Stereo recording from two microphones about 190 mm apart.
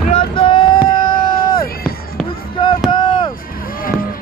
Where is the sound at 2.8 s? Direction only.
25° left (ahead or behind).